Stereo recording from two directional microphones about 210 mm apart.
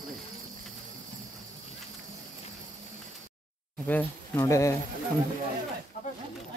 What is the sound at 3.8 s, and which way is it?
Speech, 10° left (ahead or behind).